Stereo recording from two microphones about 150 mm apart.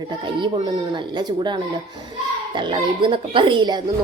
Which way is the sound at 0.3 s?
30° right (ahead or behind).